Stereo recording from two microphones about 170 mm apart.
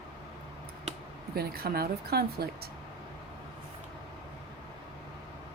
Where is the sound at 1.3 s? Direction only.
65° right (ahead or behind).